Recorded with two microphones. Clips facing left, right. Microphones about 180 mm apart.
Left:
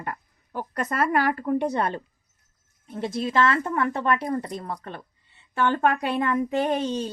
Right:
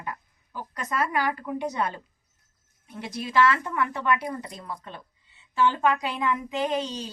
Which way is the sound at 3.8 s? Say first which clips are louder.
Left 2 dB; 50° left (ahead or behind).